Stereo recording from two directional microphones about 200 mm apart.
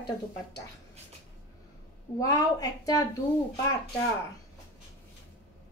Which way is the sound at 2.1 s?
15° left (ahead or behind).